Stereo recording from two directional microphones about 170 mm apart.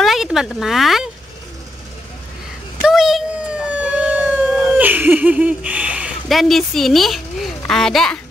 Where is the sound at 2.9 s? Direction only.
Centre (ahead or behind).